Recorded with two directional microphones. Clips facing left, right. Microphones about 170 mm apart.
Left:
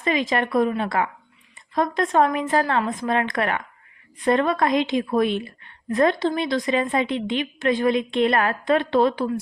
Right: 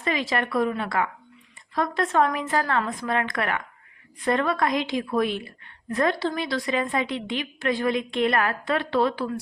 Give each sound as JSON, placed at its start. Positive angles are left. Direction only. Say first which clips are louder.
{"t": 0.0, "sound": "a woman's voice", "louder": "left 4 dB", "side_deg": 20}